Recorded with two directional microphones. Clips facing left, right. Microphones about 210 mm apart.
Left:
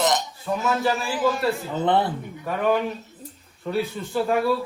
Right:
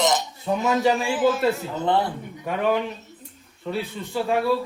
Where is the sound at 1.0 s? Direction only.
Centre (ahead or behind).